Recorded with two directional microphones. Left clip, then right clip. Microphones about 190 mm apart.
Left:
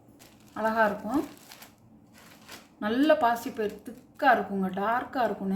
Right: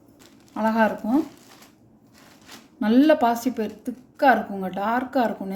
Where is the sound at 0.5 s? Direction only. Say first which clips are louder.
Right 4 dB; 40° right (ahead or behind).